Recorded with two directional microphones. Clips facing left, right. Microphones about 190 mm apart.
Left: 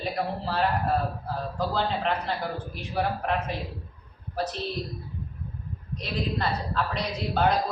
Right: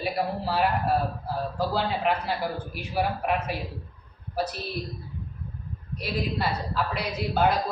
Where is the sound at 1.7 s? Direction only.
5° right (ahead or behind).